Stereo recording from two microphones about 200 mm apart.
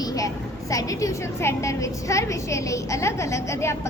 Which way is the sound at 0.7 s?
15° left (ahead or behind).